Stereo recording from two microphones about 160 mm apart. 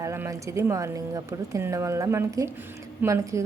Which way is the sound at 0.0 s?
20° right (ahead or behind).